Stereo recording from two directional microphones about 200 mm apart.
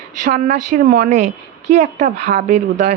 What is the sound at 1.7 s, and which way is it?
A man's voice, 35° right (ahead or behind).